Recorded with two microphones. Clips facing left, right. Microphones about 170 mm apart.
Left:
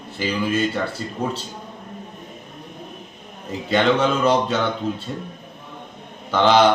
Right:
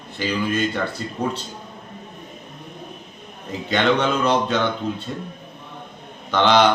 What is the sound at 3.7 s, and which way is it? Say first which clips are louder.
Speech: left 1 dB; 5° left (ahead or behind).